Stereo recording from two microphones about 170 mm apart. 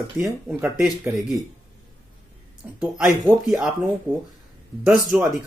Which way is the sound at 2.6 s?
5° right (ahead or behind).